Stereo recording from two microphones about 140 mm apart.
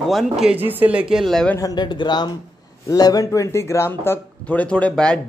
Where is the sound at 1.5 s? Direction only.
30° left (ahead or behind); by 5.1 s 10° left (ahead or behind).